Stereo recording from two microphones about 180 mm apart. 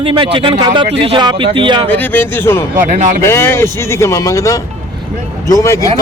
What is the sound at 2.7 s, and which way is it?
Speech, 45° right (ahead or behind).